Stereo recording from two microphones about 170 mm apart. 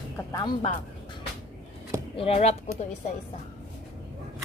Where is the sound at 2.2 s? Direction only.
35° left (ahead or behind).